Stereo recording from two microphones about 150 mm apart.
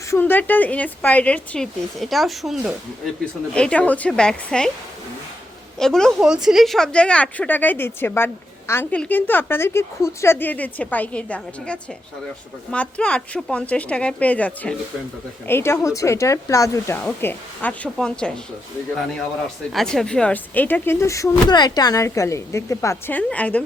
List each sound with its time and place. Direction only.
0.1 s speech: 15° left (ahead or behind)
5.8 s speech: 5° left (ahead or behind)